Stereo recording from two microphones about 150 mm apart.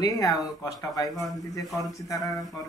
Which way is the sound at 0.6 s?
25° left (ahead or behind).